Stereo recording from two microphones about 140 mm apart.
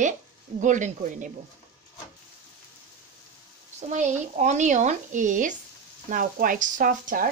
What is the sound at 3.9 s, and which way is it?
Speech, 60° right (ahead or behind).